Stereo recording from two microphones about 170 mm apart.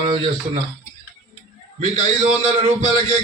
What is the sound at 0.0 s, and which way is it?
Speech, 30° right (ahead or behind).